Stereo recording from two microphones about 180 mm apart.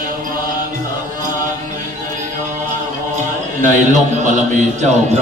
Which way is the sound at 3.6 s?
45° right (ahead or behind).